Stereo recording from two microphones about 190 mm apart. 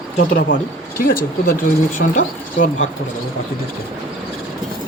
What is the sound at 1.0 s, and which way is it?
Speech, 50° left (ahead or behind).